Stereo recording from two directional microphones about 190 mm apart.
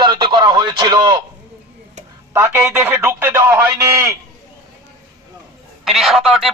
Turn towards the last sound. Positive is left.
turn(degrees=0)  # may be behind; listen again after turning